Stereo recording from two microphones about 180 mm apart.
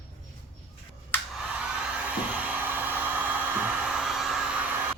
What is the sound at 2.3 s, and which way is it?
Hair dryer, 10° right (ahead or behind).